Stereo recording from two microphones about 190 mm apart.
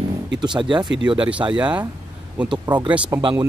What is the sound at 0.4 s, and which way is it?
Speech, 25° right (ahead or behind).